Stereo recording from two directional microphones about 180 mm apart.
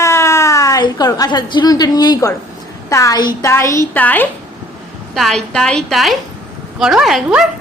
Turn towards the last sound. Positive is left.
turn(degrees=-5)  # may be behind; listen again after turning